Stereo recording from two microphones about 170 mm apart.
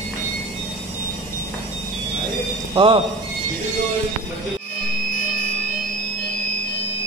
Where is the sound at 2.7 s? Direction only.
30° right (ahead or behind).